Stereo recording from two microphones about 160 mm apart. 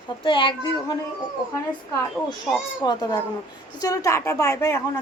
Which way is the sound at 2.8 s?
25° left (ahead or behind).